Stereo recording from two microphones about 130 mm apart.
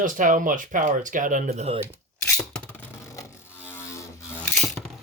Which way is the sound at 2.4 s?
5° left (ahead or behind).